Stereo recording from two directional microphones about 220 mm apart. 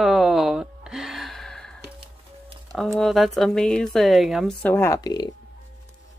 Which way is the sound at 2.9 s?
Centre (ahead or behind).